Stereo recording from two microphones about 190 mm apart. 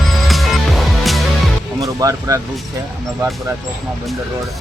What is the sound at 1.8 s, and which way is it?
Speech, 20° right (ahead or behind).